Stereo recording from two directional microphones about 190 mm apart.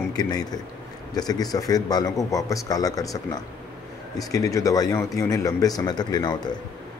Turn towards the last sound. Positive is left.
turn(degrees=20)  # may be behind; listen again after turning